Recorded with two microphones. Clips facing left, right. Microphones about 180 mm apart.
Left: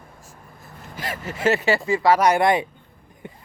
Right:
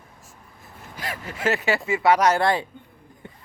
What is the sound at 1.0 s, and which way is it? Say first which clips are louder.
Speech: left 3 dB; centre (ahead or behind).